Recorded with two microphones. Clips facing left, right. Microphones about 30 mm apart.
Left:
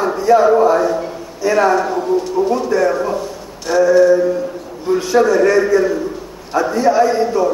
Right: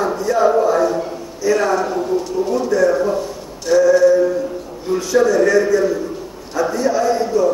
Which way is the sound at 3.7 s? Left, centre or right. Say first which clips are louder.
Right 1 dB; centre.